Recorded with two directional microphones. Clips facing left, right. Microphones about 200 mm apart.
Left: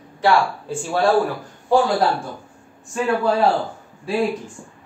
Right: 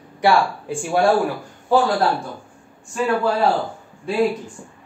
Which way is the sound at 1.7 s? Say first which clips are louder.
Even; centre (ahead or behind).